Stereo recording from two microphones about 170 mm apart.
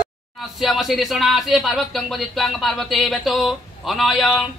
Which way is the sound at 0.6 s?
Centre (ahead or behind).